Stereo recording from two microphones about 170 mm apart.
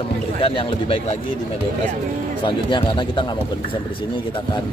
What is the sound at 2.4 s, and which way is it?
Speech, 30° left (ahead or behind).